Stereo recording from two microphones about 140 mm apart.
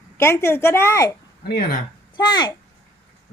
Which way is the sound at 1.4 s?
90° left.